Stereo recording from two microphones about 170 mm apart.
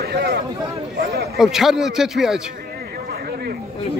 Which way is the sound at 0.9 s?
65° right (ahead or behind).